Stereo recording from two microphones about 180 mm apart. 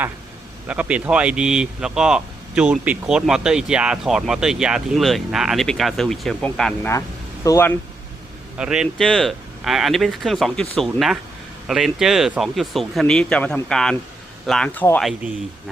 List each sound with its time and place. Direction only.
0.7 s speech: 5° right (ahead or behind)
7.4 s speech: 15° left (ahead or behind)
8.5 s speech: 5° right (ahead or behind)